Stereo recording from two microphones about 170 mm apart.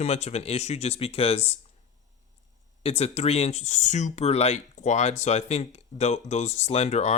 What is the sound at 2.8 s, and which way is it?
Speech, 35° left (ahead or behind).